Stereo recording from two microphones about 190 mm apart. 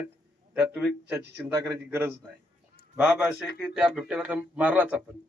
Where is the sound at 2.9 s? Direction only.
5° right (ahead or behind).